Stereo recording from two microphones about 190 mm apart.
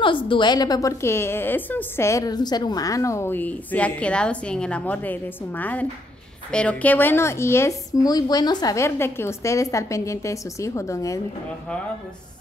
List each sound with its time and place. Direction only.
0.0 s a woman's voice: 25° left (ahead or behind)